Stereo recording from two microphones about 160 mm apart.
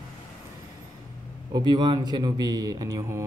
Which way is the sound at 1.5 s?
25° right (ahead or behind).